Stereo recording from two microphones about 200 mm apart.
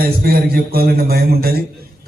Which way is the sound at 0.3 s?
50° right (ahead or behind).